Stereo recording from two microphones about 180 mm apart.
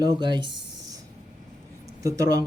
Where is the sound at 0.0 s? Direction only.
25° right (ahead or behind).